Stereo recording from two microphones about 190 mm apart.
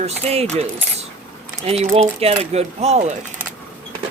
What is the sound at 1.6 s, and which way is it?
Speech, 35° right (ahead or behind).